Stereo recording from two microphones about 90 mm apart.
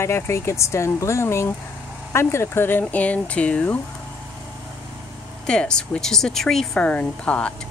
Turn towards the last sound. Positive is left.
turn(degrees=10)  # may be behind; listen again after turning